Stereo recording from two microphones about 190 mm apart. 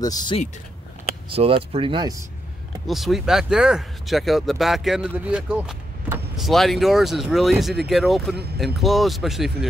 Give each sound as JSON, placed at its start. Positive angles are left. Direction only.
{"t": 0.0, "sound": "speech", "side_deg": 20}
{"t": 1.3, "sound": "speech", "side_deg": -30}
{"t": 2.9, "sound": "speech", "side_deg": 0}